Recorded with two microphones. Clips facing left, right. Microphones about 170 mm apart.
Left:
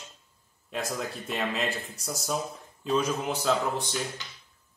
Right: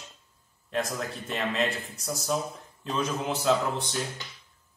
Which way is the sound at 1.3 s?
Centre (ahead or behind).